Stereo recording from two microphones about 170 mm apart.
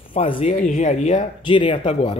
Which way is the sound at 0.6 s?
45° left (ahead or behind).